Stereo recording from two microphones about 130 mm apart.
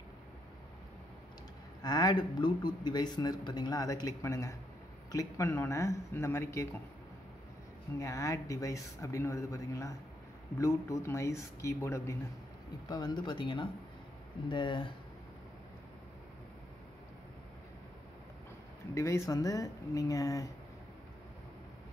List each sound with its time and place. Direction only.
1.8 s speech: 30° left (ahead or behind)
8.0 s speech: 25° left (ahead or behind)
12.9 s speech: 35° left (ahead or behind)
18.9 s speech: 25° left (ahead or behind)